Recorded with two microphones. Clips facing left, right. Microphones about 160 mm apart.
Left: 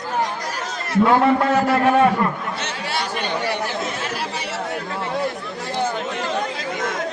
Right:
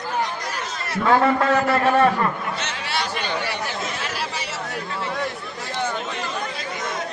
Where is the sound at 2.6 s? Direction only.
50° left (ahead or behind).